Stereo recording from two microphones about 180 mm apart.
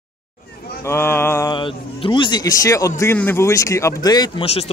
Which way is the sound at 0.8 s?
15° left (ahead or behind).